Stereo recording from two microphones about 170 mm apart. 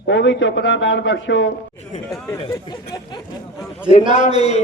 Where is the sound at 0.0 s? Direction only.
90° left.